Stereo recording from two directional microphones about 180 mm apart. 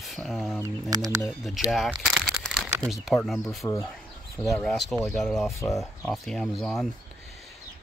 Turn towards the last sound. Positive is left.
turn(degrees=5)  # may be behind; listen again after turning